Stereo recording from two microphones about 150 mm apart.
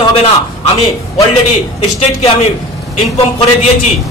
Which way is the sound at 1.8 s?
45° left (ahead or behind).